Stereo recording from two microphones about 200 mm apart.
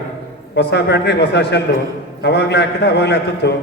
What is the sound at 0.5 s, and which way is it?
A man's voice, 55° left (ahead or behind).